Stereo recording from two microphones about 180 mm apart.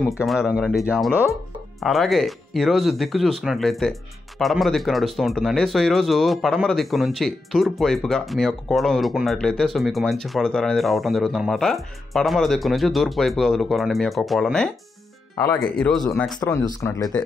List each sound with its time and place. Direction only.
0.2 s speech: 5° right (ahead or behind)
16.3 s speech: 20° left (ahead or behind)